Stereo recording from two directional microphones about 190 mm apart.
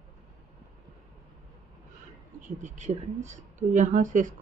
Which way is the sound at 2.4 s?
40° right (ahead or behind).